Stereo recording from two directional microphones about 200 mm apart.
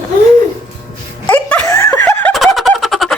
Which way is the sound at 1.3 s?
10° left (ahead or behind).